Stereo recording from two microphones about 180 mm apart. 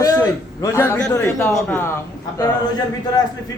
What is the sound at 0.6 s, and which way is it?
A man's voice, 15° left (ahead or behind).